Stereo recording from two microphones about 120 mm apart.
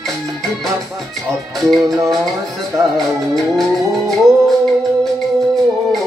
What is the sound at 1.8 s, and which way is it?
Music, 30° right (ahead or behind).